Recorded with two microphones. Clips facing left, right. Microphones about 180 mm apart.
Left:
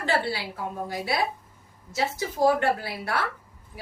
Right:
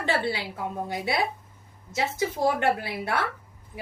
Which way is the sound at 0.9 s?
20° right (ahead or behind).